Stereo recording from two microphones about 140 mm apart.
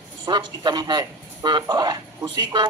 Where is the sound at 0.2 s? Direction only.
30° right (ahead or behind).